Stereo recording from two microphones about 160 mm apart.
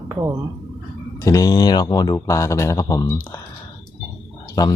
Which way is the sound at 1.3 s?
20° left (ahead or behind).